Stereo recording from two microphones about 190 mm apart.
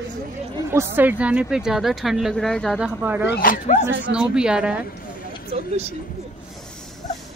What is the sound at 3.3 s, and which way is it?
Speech, 45° left (ahead or behind).